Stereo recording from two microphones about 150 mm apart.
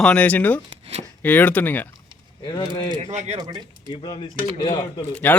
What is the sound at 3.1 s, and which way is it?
Speech, 50° right (ahead or behind).